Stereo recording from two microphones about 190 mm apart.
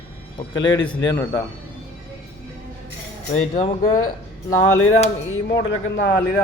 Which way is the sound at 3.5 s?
45° left (ahead or behind).